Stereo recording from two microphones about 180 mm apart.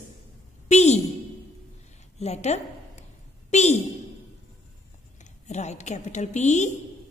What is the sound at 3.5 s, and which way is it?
Speech, 40° left (ahead or behind).